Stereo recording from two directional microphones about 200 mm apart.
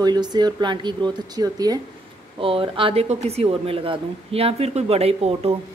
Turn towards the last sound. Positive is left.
turn(degrees=-30)  # may be behind; listen again after turning